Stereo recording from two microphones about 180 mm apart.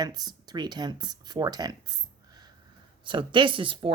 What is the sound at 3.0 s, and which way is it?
Speech, 25° right (ahead or behind).